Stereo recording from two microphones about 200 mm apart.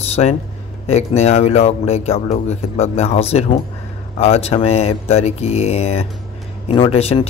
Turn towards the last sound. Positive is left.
turn(degrees=30)  # may be behind; listen again after turning